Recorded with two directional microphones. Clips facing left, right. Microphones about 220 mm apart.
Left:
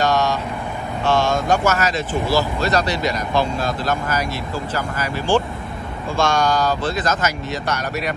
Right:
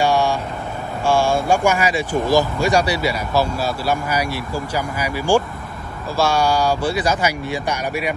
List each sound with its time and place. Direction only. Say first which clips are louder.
0.0 s vehicle: right 1 dB; 10° right (ahead or behind)
1.0 s speech: right 1 dB; 10° right (ahead or behind)